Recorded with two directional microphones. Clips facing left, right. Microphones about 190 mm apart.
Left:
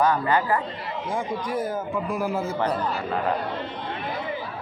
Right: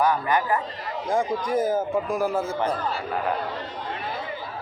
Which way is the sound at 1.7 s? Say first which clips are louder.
Right 3 dB; 45° right (ahead or behind).